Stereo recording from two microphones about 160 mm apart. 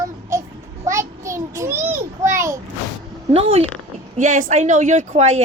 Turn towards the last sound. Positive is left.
turn(degrees=-45)  # may be behind; listen again after turning